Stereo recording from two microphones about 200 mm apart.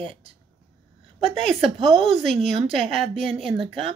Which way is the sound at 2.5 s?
30° right (ahead or behind).